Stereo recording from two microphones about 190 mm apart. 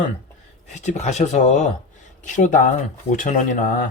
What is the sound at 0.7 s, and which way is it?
Speech, 40° left (ahead or behind).